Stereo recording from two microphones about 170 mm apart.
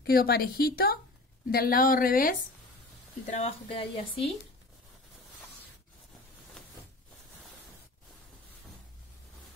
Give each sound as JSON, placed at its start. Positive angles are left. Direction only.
{"t": 0.0, "sound": "a woman's voice", "side_deg": 65}
{"t": 3.3, "sound": "speech", "side_deg": 40}
{"t": 6.6, "sound": "a sound", "side_deg": 5}